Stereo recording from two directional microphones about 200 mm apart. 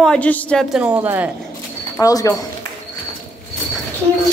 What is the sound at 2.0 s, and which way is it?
Speech, 15° left (ahead or behind).